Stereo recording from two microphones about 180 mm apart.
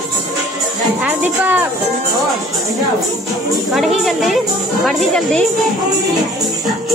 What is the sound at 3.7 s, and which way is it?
A woman's voice, centre (ahead or behind).